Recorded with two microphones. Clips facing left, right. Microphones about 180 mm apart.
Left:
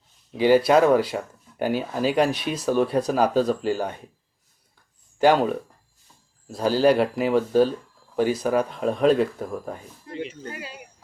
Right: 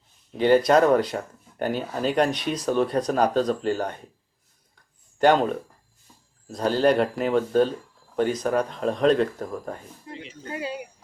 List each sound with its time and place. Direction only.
0.3 s speech: 5° left (ahead or behind)
5.2 s speech: 5° left (ahead or behind)
10.1 s a sound: 15° right (ahead or behind)